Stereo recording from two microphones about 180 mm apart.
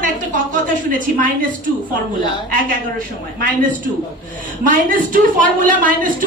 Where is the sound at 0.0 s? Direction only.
50° right (ahead or behind).